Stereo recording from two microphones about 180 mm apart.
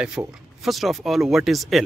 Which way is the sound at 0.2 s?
15° right (ahead or behind).